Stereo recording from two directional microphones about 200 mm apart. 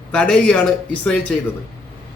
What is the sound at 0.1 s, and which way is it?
Speech, 5° left (ahead or behind).